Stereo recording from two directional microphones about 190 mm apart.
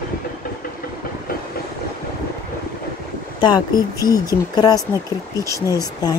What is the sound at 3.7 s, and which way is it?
Speech, 20° left (ahead or behind).